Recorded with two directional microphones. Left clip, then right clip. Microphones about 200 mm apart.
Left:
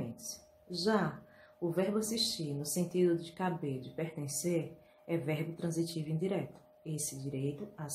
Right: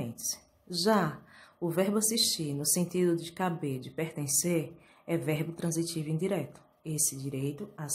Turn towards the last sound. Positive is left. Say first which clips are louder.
# right 2 dB
turn(degrees=-25)  # may be behind; listen again after turning